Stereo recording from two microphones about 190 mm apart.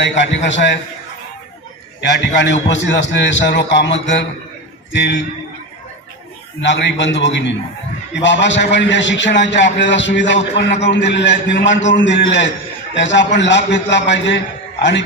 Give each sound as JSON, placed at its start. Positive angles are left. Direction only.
{"t": 0.2, "sound": "a man's voice", "side_deg": 70}
{"t": 2.0, "sound": "a man's voice", "side_deg": 65}
{"t": 6.7, "sound": "a man's voice", "side_deg": 70}